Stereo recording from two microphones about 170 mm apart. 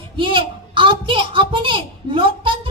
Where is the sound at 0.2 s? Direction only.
30° right (ahead or behind).